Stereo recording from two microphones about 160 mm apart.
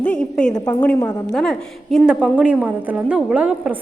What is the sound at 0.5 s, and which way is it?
Speech, 25° left (ahead or behind).